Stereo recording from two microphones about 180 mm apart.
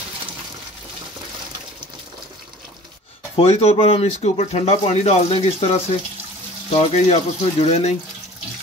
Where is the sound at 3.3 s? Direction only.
35° left (ahead or behind).